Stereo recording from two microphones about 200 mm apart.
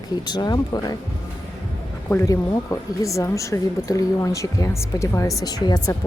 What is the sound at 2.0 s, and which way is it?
A woman's voice, 15° left (ahead or behind).